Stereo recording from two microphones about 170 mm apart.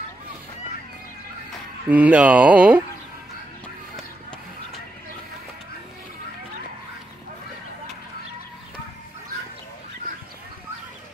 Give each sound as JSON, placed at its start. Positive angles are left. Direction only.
{"t": 1.9, "sound": "speech", "side_deg": -10}